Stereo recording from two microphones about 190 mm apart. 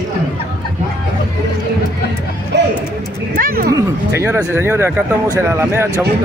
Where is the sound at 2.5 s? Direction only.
65° right (ahead or behind).